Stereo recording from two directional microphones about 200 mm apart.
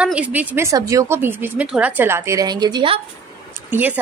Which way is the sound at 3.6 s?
10° right (ahead or behind).